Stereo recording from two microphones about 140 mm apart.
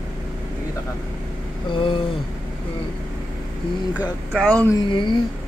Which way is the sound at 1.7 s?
35° left (ahead or behind).